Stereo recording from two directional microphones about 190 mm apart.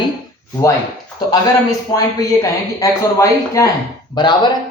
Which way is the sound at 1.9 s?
20° left (ahead or behind).